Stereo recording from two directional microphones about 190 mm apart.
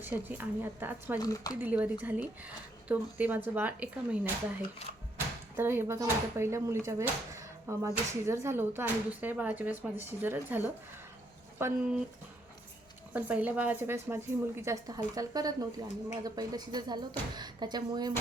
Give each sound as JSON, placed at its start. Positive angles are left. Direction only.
{"t": 0.0, "sound": "speech", "side_deg": -10}
{"t": 1.2, "sound": "speech", "side_deg": 20}
{"t": 1.6, "sound": "speech", "side_deg": -10}
{"t": 13.1, "sound": "speech", "side_deg": -10}